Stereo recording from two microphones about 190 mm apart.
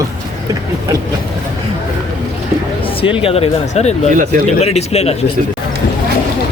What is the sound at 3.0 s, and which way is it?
Speech, 30° left (ahead or behind).